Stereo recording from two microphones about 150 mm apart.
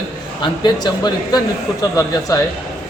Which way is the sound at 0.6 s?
25° left (ahead or behind).